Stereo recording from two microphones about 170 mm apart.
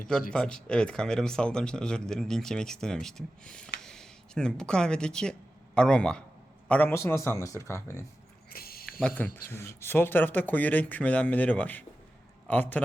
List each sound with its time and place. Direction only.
0.3 s speech: 5° left (ahead or behind)
8.4 s dog: 60° left (ahead or behind)
8.9 s speech: 5° left (ahead or behind)